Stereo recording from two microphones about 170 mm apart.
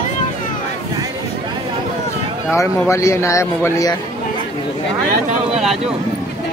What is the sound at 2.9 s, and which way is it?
A man's voice, 15° left (ahead or behind).